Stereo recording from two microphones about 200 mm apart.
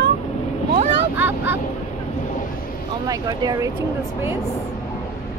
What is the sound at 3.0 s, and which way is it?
Speech, 20° right (ahead or behind).